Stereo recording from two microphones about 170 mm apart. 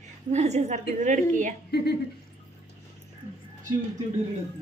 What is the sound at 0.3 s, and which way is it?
A woman's voice, 40° right (ahead or behind).